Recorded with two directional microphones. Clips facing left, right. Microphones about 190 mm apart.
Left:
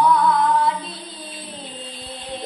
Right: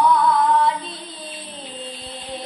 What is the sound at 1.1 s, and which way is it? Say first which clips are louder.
Music: even; centre (ahead or behind).